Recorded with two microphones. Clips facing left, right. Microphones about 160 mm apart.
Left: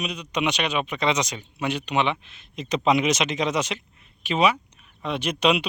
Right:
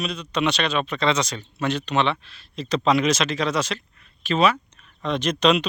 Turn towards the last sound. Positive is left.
turn(degrees=10)  # may be behind; listen again after turning